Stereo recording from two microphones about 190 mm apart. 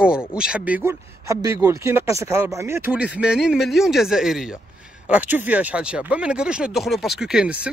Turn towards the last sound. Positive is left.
turn(degrees=-5)  # may be behind; listen again after turning